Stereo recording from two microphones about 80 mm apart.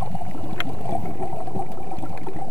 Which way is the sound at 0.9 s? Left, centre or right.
Left.